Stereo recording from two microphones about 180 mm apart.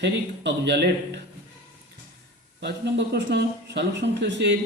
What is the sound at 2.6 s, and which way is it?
Speech, 75° right (ahead or behind).